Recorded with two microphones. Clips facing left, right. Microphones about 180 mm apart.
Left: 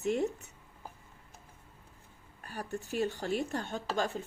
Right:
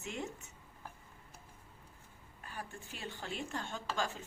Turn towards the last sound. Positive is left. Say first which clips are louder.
# left 5 dB
turn(degrees=40)  # may be behind; listen again after turning